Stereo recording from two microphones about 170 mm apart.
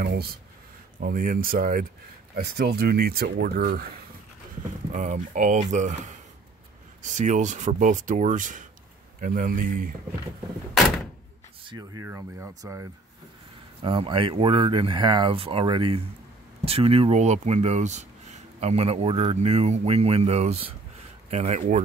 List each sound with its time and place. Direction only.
0.0 s speech: 65° right (ahead or behind)
2.3 s speech: 65° right (ahead or behind)
4.9 s speech: 50° right (ahead or behind)
7.0 s speech: 45° right (ahead or behind)
12.0 s speech: 15° right (ahead or behind)
13.8 s speech: 30° right (ahead or behind); by 21.8 s 45° right (ahead or behind)